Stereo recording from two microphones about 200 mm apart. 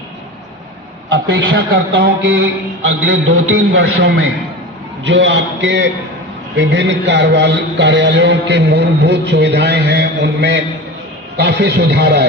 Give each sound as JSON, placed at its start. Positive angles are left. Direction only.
{"t": 1.1, "sound": "a man's voice", "side_deg": -70}